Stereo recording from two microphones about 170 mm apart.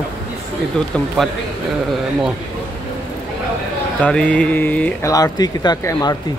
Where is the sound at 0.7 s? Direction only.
5° left (ahead or behind).